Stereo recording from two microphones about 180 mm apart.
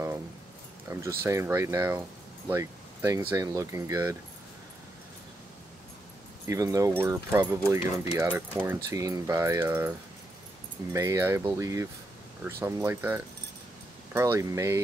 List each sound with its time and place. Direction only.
0.8 s speech: 15° right (ahead or behind)
6.4 s speech: 20° right (ahead or behind)